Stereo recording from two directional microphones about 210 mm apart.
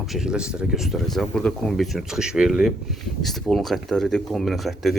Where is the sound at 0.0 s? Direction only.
Centre (ahead or behind).